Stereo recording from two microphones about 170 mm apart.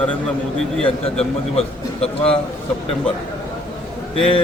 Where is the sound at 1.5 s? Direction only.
35° left (ahead or behind).